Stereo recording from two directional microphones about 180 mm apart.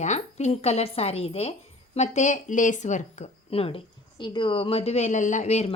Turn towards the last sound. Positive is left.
turn(degrees=35)  # may be behind; listen again after turning